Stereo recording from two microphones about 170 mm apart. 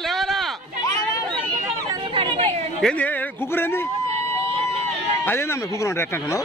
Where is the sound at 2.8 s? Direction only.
10° left (ahead or behind).